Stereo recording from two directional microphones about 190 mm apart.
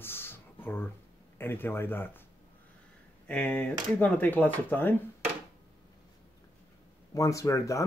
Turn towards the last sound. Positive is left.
turn(degrees=15)  # may be behind; listen again after turning